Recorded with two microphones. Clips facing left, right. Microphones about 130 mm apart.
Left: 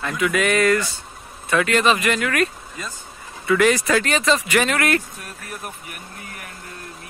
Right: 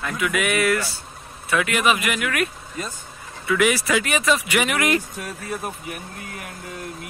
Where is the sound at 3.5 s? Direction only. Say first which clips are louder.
Left 3 dB; 10° right (ahead or behind).